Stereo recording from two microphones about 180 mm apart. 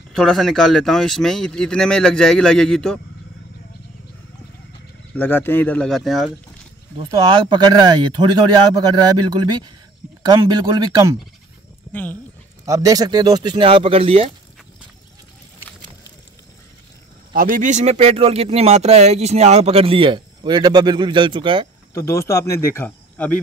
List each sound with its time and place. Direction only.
0.1 s speech: centre (ahead or behind)
5.1 s speech: 10° left (ahead or behind)
7.0 s speech: 25° right (ahead or behind)
11.9 s speech: 10° left (ahead or behind)
12.6 s speech: 20° right (ahead or behind)
17.3 s speech: 50° right (ahead or behind); by 21.6 s 30° right (ahead or behind)
21.9 s speech: 15° left (ahead or behind)